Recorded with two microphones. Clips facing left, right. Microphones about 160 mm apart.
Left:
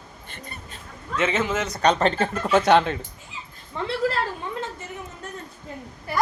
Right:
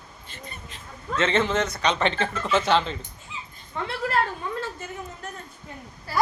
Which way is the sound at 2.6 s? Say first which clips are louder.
Left 5 dB; 60° left (ahead or behind).